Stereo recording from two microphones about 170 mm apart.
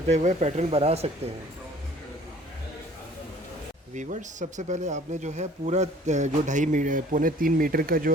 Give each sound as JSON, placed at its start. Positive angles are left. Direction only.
{"t": 0.1, "sound": "speech", "side_deg": -40}
{"t": 3.9, "sound": "speech", "side_deg": -45}